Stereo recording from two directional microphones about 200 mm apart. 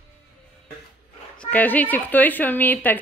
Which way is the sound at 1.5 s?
10° left (ahead or behind).